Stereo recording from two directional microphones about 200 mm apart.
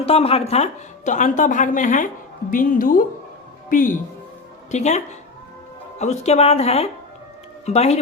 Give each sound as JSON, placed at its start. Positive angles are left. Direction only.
{"t": 0.0, "sound": "a woman's voice", "side_deg": 30}